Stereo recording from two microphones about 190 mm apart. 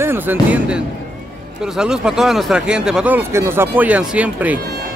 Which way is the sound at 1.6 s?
5° right (ahead or behind).